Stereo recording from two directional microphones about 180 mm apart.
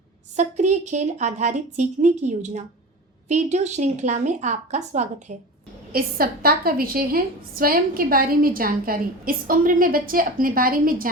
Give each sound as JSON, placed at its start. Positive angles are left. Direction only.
{"t": 0.3, "sound": "a woman's voice", "side_deg": -40}
{"t": 5.9, "sound": "a woman's voice", "side_deg": -55}